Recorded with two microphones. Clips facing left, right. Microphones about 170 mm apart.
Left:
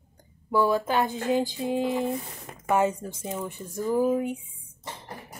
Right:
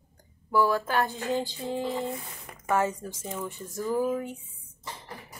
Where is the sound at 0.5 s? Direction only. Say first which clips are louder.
Left 2 dB; 20° left (ahead or behind).